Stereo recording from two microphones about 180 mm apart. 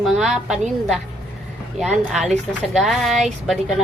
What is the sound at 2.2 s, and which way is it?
A woman's voice, centre (ahead or behind).